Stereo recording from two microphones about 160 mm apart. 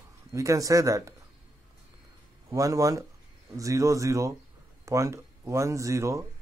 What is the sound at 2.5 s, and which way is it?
Speech, 20° right (ahead or behind).